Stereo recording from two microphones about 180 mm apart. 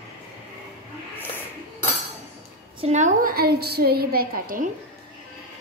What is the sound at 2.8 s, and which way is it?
A woman's voice, 40° right (ahead or behind).